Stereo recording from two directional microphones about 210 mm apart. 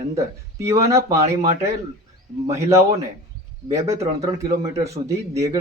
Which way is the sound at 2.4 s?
15° right (ahead or behind).